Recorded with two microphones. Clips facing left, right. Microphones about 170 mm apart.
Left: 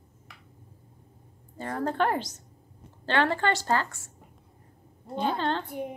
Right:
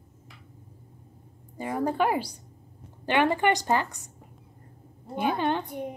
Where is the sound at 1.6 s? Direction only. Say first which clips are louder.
Right 2 dB; 10° right (ahead or behind).